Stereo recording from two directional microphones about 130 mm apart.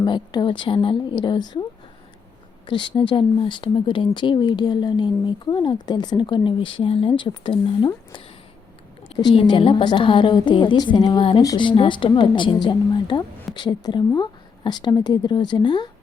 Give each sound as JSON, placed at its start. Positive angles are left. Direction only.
{"t": 0.0, "sound": "speech", "side_deg": 35}
{"t": 2.6, "sound": "speech", "side_deg": 35}
{"t": 9.0, "sound": "speech", "side_deg": 40}